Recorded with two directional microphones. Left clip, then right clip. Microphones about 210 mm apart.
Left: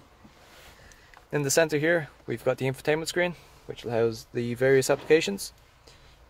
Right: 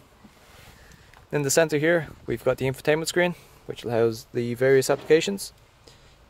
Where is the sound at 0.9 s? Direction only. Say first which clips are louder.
Right 2 dB; 15° right (ahead or behind).